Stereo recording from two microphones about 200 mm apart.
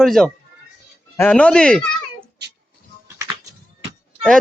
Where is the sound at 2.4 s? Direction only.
55° right (ahead or behind).